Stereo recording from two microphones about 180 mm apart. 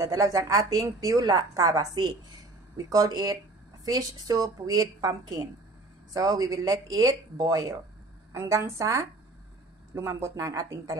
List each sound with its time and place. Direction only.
0.0 s a woman's voice: 20° right (ahead or behind)